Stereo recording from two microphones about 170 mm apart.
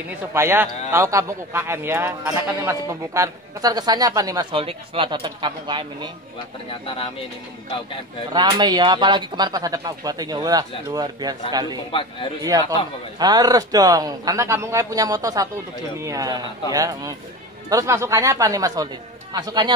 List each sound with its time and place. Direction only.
0.3 s a man's voice: 15° right (ahead or behind)
8.3 s a man's voice: 25° right (ahead or behind)
11.9 s a man's voice: 30° left (ahead or behind)
12.5 s a man's voice: 20° right (ahead or behind)